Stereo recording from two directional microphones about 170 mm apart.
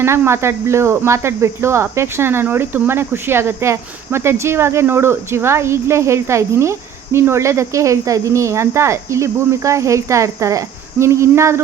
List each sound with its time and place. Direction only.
0.0 s speech: 15° right (ahead or behind)